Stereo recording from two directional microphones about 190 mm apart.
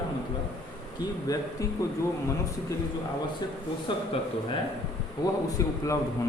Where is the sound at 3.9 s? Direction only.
25° left (ahead or behind).